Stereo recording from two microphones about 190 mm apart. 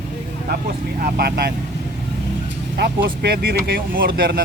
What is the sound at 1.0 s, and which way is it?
Speech, 55° right (ahead or behind).